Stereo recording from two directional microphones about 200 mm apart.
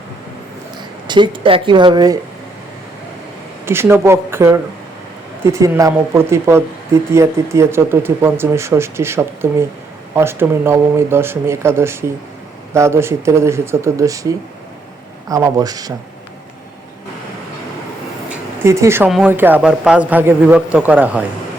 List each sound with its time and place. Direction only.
1.0 s speech: 25° right (ahead or behind)
3.7 s speech: 10° right (ahead or behind)
18.3 s a sound: 15° right (ahead or behind)
19.1 s speech: 10° right (ahead or behind)